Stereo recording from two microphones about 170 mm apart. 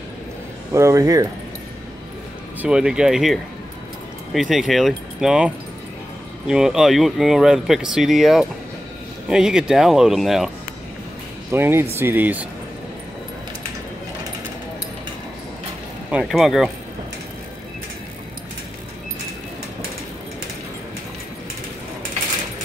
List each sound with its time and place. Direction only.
0.7 s speech: 20° right (ahead or behind)
2.6 s speech: 5° right (ahead or behind)
11.5 s speech: 15° right (ahead or behind)
16.1 s speech: 5° right (ahead or behind)